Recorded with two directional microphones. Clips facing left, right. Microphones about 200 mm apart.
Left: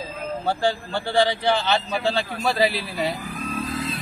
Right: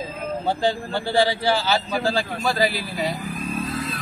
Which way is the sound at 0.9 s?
10° right (ahead or behind).